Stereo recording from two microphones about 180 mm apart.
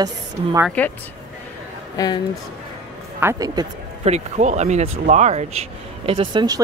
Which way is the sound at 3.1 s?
15° right (ahead or behind).